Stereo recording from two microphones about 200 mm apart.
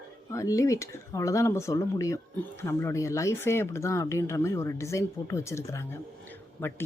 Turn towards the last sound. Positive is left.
turn(degrees=10)  # may be behind; listen again after turning